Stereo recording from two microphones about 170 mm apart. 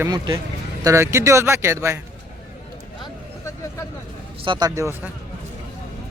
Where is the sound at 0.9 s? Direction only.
15° right (ahead or behind).